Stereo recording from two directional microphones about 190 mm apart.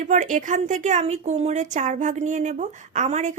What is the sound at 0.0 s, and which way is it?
Speech, 40° right (ahead or behind).